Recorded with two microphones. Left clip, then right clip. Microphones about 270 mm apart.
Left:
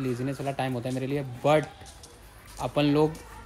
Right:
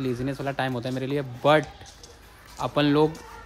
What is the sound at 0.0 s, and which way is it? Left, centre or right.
Speech, centre.